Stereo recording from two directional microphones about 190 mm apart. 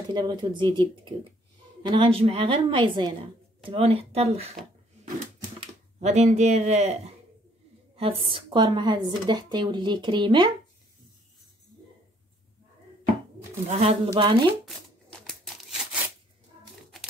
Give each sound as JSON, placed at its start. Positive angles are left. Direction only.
{"t": 0.1, "sound": "a woman's voice", "side_deg": -25}
{"t": 5.6, "sound": "a woman's voice", "side_deg": -35}
{"t": 13.7, "sound": "a woman's voice", "side_deg": -30}
{"t": 14.7, "sound": "a sound", "side_deg": 0}